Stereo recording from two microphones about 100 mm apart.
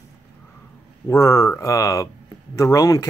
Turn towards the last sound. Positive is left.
turn(degrees=35)  # may be behind; listen again after turning